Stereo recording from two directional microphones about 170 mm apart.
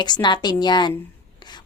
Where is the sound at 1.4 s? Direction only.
25° left (ahead or behind).